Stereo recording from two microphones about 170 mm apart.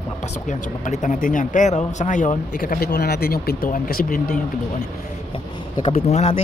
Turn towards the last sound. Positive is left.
turn(degrees=40)  # may be behind; listen again after turning